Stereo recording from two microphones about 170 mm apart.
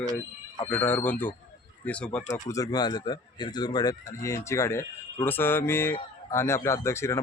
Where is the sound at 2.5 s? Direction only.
20° left (ahead or behind).